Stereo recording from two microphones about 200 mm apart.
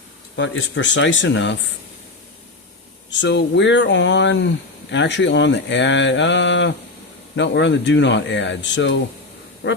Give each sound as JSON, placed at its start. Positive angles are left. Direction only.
{"t": 0.3, "sound": "speech", "side_deg": 70}
{"t": 3.1, "sound": "speech", "side_deg": 65}
{"t": 9.6, "sound": "quack", "side_deg": 75}